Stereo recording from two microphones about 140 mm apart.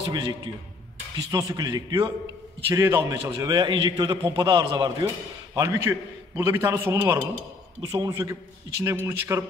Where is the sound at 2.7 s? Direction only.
15° right (ahead or behind).